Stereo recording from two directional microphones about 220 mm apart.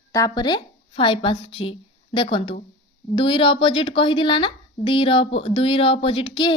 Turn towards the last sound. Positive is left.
turn(degrees=20)  # may be behind; listen again after turning